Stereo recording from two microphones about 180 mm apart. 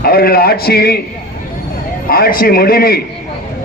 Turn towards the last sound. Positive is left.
turn(degrees=55)  # may be behind; listen again after turning